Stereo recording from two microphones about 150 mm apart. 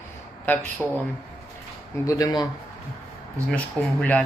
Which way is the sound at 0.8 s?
Centre (ahead or behind).